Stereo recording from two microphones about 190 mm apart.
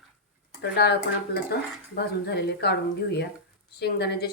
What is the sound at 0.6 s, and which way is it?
A woman's voice, 60° left (ahead or behind).